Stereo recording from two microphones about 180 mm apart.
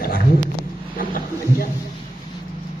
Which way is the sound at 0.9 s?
50° left (ahead or behind).